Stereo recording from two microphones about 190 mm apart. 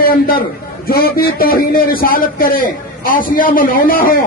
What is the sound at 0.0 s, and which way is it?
A man's voice, 50° left (ahead or behind).